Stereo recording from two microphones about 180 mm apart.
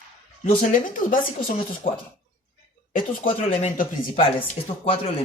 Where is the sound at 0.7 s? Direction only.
50° left (ahead or behind).